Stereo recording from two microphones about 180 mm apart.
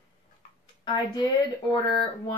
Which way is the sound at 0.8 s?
20° left (ahead or behind).